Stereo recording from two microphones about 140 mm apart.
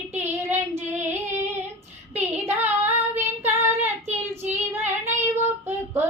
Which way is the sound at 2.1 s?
15° right (ahead or behind).